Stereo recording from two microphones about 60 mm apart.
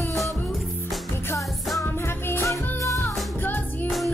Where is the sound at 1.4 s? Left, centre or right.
Centre.